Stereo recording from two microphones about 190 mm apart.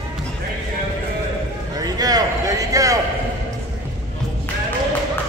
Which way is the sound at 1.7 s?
20° right (ahead or behind).